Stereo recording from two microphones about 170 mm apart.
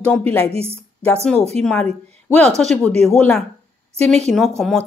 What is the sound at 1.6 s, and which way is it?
Speech, 5° left (ahead or behind).